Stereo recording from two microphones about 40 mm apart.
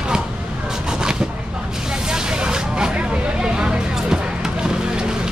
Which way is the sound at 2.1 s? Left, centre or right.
Centre.